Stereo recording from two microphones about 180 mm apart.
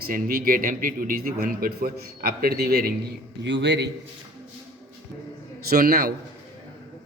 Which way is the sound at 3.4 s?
80° right.